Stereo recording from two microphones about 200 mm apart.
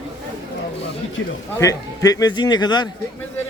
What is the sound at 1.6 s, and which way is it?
Speech, 15° left (ahead or behind).